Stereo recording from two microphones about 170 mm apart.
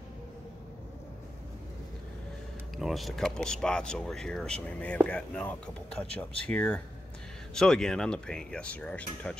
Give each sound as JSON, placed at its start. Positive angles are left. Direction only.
{"t": 2.8, "sound": "speech", "side_deg": 0}